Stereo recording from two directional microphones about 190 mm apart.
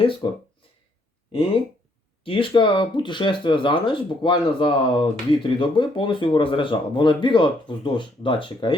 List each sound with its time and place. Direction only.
0.0 s speech: 25° left (ahead or behind)
2.2 s speech: 30° left (ahead or behind)